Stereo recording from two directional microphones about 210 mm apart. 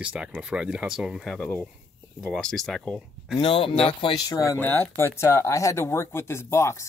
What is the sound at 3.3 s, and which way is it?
Speech, 25° left (ahead or behind).